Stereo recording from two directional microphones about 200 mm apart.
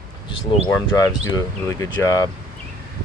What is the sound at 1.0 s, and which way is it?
Speech, 15° left (ahead or behind).